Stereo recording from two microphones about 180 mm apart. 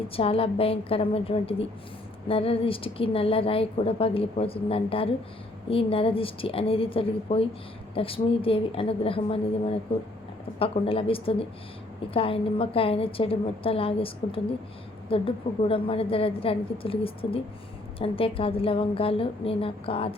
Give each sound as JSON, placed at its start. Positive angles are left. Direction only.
{"t": 0.2, "sound": "a woman's voice", "side_deg": 30}